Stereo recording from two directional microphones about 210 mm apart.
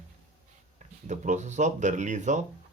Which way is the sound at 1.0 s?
35° right (ahead or behind).